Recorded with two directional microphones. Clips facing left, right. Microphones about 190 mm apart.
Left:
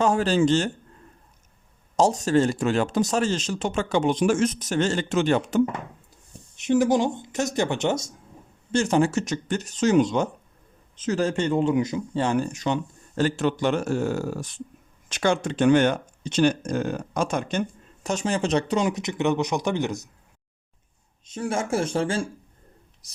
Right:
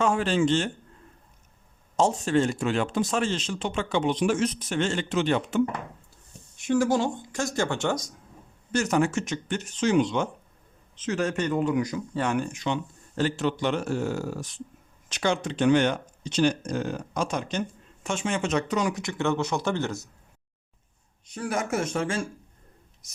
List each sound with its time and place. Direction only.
0.0 s speech: 40° left (ahead or behind)
2.0 s speech: 40° left (ahead or behind)
6.6 s speech: 20° left (ahead or behind); by 17.6 s 50° left (ahead or behind)
18.0 s speech: 40° left (ahead or behind); by 20.1 s 15° left (ahead or behind)
21.2 s speech: 25° left (ahead or behind)